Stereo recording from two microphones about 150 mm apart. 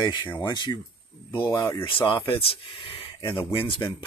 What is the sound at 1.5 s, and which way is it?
Speech, 15° left (ahead or behind).